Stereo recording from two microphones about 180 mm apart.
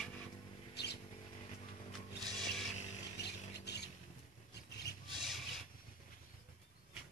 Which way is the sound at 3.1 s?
70° left (ahead or behind).